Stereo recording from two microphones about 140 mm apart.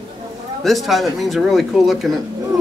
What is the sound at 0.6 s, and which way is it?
A man's voice, centre (ahead or behind).